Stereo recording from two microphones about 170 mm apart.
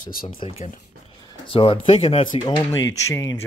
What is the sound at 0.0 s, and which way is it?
Speech, 55° left (ahead or behind).